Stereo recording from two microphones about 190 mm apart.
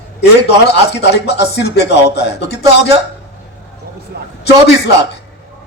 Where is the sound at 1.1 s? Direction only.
60° left (ahead or behind).